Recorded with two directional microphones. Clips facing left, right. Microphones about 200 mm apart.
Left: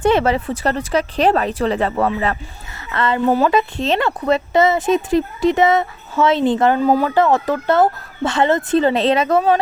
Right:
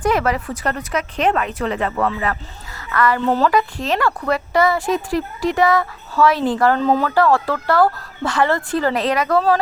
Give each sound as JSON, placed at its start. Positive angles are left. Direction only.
{"t": 0.0, "sound": "speech", "side_deg": 25}
{"t": 3.2, "sound": "speech", "side_deg": 10}
{"t": 3.5, "sound": "speech", "side_deg": 25}
{"t": 6.7, "sound": "speech", "side_deg": 10}
{"t": 7.1, "sound": "speech", "side_deg": 20}